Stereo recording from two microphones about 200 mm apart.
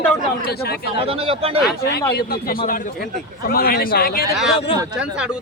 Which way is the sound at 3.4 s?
50° left (ahead or behind).